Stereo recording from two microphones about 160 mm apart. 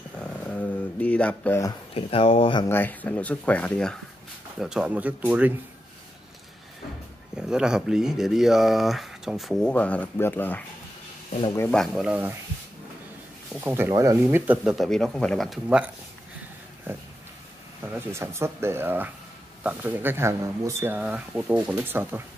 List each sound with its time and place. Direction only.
0.2 s a sound: 10° left (ahead or behind)
2.0 s speech: 35° left (ahead or behind)
2.7 s speech: 10° left (ahead or behind); by 5.5 s 10° right (ahead or behind)
7.3 s speech: 5° right (ahead or behind)
13.6 s speech: 15° right (ahead or behind)
17.9 s speech: 15° right (ahead or behind)